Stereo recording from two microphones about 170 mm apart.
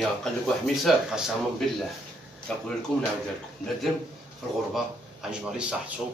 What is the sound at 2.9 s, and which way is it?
Speech, centre (ahead or behind).